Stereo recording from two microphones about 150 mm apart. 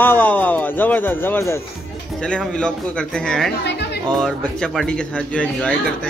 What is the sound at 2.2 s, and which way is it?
A man's voice, 5° left (ahead or behind).